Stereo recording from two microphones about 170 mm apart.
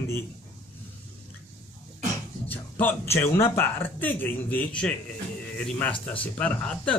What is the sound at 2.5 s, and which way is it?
Speech, 10° left (ahead or behind).